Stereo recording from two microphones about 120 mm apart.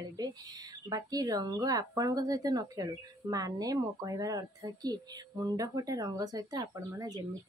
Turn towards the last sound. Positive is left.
turn(degrees=-30)  # may be behind; listen again after turning